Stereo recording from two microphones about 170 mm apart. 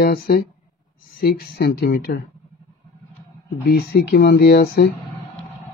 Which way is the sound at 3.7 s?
65° left (ahead or behind).